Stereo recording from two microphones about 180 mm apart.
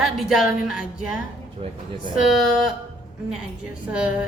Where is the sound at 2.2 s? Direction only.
5° right (ahead or behind).